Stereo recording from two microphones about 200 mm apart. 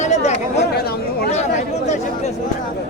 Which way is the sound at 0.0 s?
35° left (ahead or behind).